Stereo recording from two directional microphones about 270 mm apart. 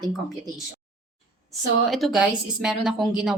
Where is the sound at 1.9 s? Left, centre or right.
Centre.